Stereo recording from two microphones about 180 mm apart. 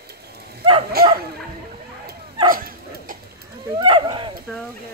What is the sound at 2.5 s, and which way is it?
Dog, 50° right (ahead or behind).